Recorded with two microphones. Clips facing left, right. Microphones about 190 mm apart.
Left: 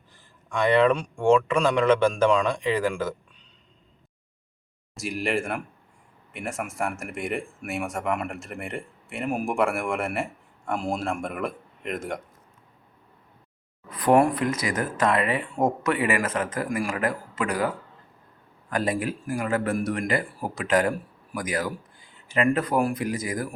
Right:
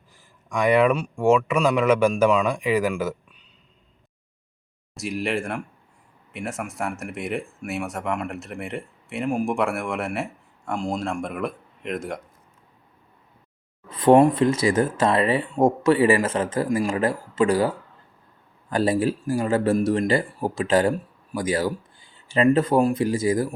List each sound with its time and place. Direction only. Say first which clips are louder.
0.5 s speech: right 1 dB; 10° right (ahead or behind)
4.9 s speech: right 1 dB; centre (ahead or behind)
13.9 s speech: right 4 dB; 25° right (ahead or behind)